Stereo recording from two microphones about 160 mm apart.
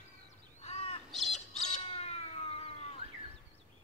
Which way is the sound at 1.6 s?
45° left (ahead or behind).